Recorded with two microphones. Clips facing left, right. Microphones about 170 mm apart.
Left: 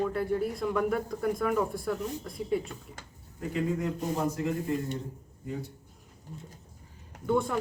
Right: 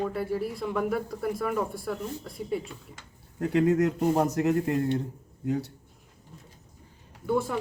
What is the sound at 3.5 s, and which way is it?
Speech, 75° right (ahead or behind).